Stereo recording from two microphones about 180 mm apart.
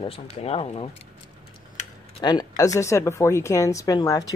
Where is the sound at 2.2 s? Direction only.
25° left (ahead or behind).